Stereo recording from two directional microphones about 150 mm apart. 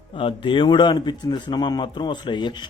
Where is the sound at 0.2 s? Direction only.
35° left (ahead or behind).